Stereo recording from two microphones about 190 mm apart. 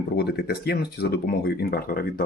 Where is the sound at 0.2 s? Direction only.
55° left (ahead or behind).